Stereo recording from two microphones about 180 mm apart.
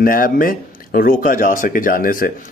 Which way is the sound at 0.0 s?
50° left (ahead or behind).